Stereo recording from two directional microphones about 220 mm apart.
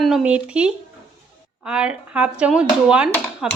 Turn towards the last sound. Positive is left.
turn(degrees=-5)  # may be behind; listen again after turning